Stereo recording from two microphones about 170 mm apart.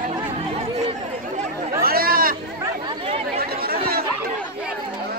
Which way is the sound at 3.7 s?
60° right (ahead or behind).